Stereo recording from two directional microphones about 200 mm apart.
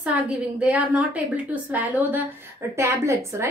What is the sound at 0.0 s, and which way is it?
A woman's voice, 5° right (ahead or behind).